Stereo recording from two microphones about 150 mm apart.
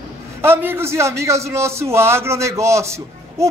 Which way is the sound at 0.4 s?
15° right (ahead or behind).